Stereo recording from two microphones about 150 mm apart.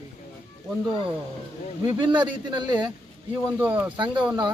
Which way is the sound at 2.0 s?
30° right (ahead or behind).